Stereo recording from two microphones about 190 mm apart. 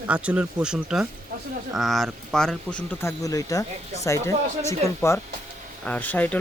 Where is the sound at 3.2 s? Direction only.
20° left (ahead or behind).